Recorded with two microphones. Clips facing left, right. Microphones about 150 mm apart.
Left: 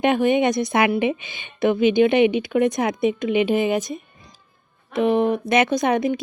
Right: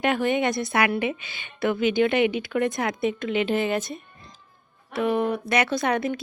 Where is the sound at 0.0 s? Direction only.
20° left (ahead or behind).